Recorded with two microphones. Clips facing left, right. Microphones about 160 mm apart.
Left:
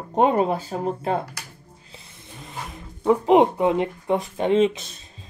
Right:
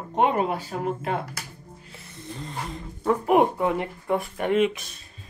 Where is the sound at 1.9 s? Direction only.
15° left (ahead or behind).